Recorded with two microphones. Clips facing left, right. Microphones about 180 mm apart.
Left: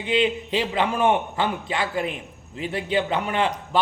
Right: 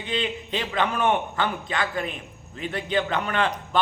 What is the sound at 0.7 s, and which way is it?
A man's voice, 30° left (ahead or behind).